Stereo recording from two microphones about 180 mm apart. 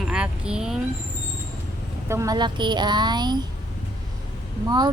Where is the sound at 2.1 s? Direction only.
20° right (ahead or behind).